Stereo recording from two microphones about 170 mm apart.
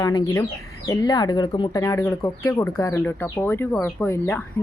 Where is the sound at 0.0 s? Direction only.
25° left (ahead or behind).